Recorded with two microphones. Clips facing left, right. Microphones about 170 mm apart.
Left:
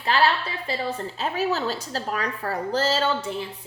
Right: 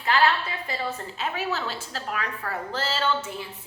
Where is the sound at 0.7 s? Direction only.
30° left (ahead or behind).